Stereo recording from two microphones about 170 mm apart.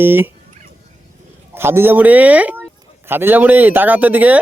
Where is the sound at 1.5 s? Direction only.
15° right (ahead or behind).